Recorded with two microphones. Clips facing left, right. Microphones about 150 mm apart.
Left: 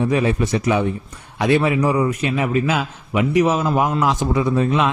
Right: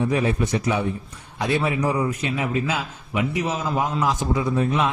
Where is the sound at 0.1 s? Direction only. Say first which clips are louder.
Left 3 dB; 90° left.